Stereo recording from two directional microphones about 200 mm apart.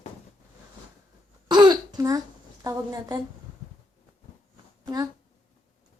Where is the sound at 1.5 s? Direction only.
20° right (ahead or behind).